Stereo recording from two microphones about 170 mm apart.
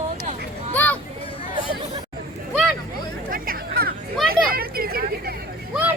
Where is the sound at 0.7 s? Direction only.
10° left (ahead or behind).